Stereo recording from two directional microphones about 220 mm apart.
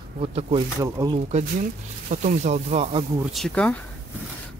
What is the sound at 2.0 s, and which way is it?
Speech, 35° right (ahead or behind).